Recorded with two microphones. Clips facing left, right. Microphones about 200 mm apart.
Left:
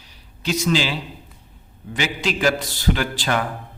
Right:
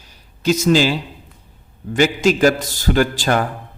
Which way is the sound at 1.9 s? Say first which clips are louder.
Right 9 dB; 45° right (ahead or behind).